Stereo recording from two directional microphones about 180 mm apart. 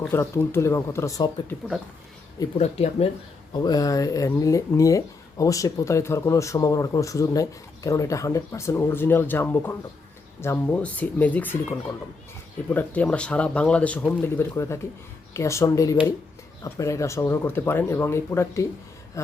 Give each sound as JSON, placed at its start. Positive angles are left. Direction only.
{"t": 0.1, "sound": "speech", "side_deg": 15}
{"t": 2.6, "sound": "speech", "side_deg": 35}
{"t": 3.5, "sound": "speech", "side_deg": 25}